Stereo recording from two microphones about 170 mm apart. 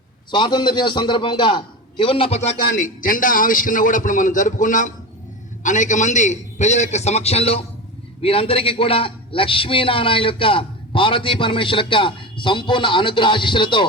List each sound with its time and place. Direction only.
0.3 s a man's voice: 25° left (ahead or behind)